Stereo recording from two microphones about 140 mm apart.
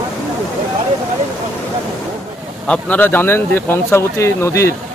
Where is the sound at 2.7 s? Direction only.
10° left (ahead or behind).